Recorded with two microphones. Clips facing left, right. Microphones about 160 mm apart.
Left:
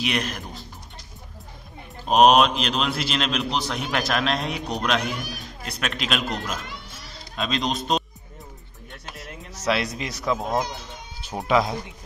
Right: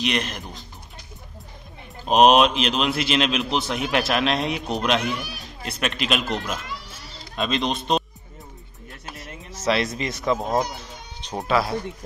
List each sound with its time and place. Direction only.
0.0 s a man's voice: centre (ahead or behind)
2.0 s a man's voice: centre (ahead or behind)
8.9 s a sound: centre (ahead or behind)